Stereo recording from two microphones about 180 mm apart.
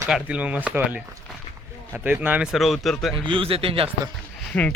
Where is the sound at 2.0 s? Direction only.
10° right (ahead or behind).